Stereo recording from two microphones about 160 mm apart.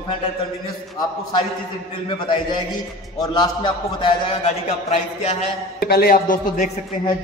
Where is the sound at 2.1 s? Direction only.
30° left (ahead or behind).